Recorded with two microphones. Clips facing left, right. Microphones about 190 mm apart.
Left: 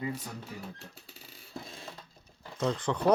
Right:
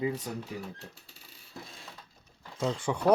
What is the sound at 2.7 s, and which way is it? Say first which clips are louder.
Speech: even; 10° right (ahead or behind).